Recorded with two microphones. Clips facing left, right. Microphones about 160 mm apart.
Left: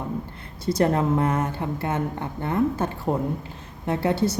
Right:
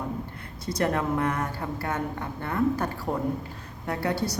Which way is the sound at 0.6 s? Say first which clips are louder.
Left 5 dB; 30° left (ahead or behind).